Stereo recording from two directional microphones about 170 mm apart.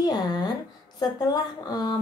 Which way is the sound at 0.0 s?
25° left (ahead or behind).